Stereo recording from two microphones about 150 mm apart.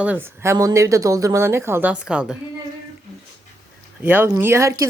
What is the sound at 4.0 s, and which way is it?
Speech, 10° right (ahead or behind).